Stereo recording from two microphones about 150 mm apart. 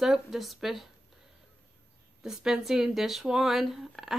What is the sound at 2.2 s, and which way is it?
Speech, 5° right (ahead or behind).